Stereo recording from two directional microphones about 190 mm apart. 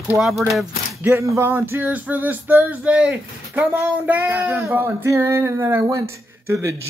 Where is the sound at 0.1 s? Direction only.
Centre (ahead or behind).